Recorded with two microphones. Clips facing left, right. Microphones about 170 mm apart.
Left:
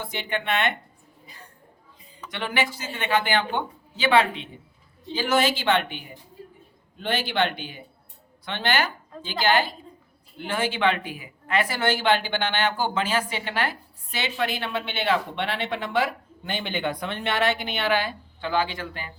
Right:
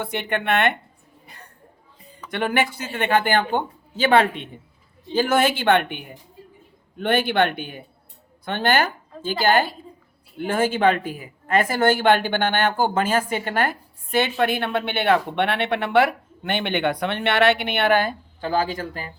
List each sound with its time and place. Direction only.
0.0 s speech: 60° right (ahead or behind)
1.3 s a sound: 65° right (ahead or behind)
2.3 s speech: 55° right (ahead or behind)